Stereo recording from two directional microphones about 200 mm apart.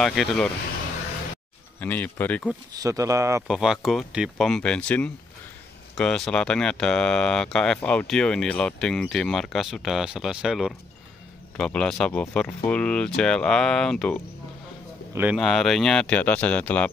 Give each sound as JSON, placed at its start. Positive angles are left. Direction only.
{"t": 0.0, "sound": "speech", "side_deg": 0}
{"t": 1.8, "sound": "speech", "side_deg": 10}
{"t": 2.7, "sound": "speech", "side_deg": -15}
{"t": 3.4, "sound": "speech", "side_deg": -5}